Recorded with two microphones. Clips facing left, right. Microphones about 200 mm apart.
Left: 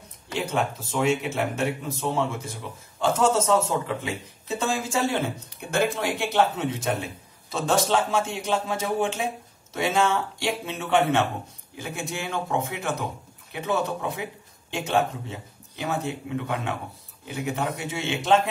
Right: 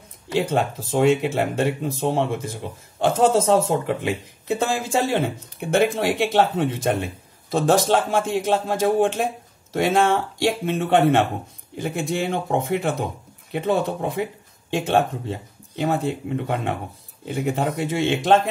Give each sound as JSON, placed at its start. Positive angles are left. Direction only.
{"t": 0.4, "sound": "speech", "side_deg": -55}
{"t": 9.8, "sound": "speech", "side_deg": -55}